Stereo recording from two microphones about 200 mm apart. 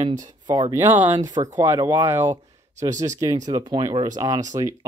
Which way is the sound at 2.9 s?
35° right (ahead or behind).